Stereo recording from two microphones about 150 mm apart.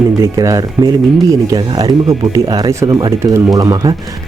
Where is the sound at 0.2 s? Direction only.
20° right (ahead or behind).